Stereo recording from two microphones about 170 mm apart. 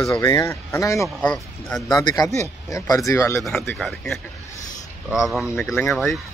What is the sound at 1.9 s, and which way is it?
Speech, 25° left (ahead or behind).